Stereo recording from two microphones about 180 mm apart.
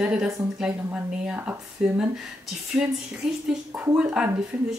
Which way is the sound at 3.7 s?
15° right (ahead or behind).